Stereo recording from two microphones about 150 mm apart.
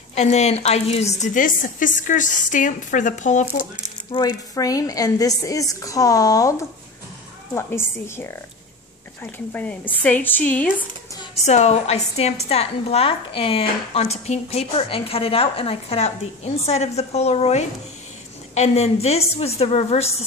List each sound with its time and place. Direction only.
0.1 s a woman's voice: 45° left (ahead or behind)
4.1 s a woman's voice: 25° left (ahead or behind)
7.5 s a woman's voice: 15° left (ahead or behind)
11.4 s a woman's voice: 50° left (ahead or behind)